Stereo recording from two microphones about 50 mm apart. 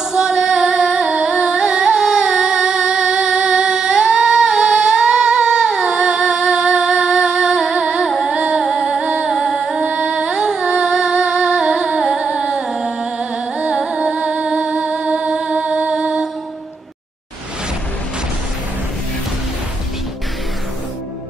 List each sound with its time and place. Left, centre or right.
0.1 s singing: centre
8.3 s music: centre
9.3 s music: centre
9.8 s music: centre